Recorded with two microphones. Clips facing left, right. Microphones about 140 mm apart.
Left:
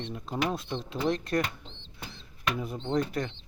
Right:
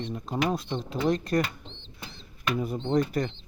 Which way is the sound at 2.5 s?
Centre (ahead or behind).